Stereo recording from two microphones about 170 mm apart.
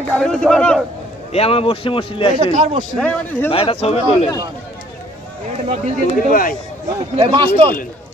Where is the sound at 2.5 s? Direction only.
40° right (ahead or behind).